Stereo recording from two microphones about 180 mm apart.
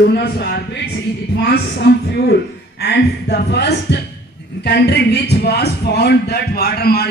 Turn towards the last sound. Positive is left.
turn(degrees=60)  # may be behind; listen again after turning